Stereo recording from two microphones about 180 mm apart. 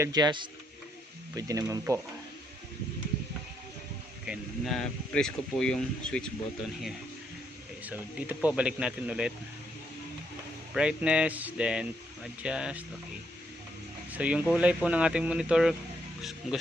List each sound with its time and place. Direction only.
0.0 s speech: 20° right (ahead or behind)
4.3 s speech: centre (ahead or behind)
7.8 s speech: 10° right (ahead or behind)
10.7 s speech: 5° right (ahead or behind)
14.1 s speech: 10° right (ahead or behind)